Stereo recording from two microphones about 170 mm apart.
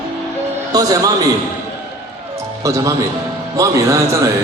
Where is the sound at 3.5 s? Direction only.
20° right (ahead or behind).